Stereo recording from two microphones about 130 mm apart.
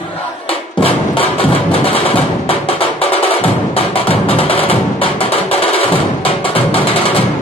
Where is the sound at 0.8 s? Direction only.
45° left (ahead or behind).